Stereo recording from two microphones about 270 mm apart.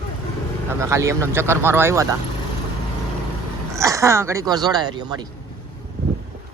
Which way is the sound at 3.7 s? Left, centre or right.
Centre.